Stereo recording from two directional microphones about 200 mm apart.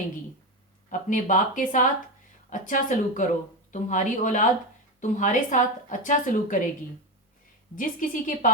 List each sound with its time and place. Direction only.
0.9 s a woman's voice: 40° left (ahead or behind)
7.8 s a woman's voice: 40° left (ahead or behind)